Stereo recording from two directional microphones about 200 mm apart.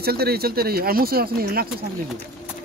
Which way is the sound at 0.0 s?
50° right (ahead or behind).